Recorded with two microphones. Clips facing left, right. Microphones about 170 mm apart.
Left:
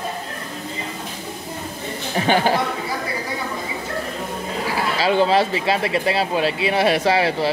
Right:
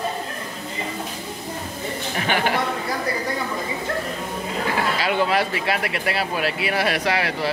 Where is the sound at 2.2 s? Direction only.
30° left (ahead or behind).